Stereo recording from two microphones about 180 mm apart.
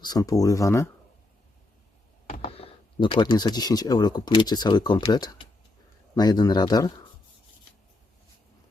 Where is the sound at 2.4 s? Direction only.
30° left (ahead or behind).